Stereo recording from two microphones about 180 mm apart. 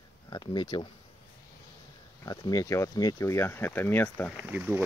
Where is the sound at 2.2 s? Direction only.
20° left (ahead or behind).